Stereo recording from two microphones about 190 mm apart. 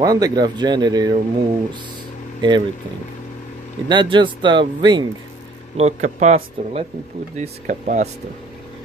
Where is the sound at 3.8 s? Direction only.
25° right (ahead or behind).